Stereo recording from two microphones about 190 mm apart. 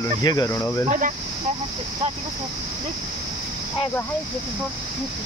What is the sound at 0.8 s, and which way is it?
Speech, 45° right (ahead or behind).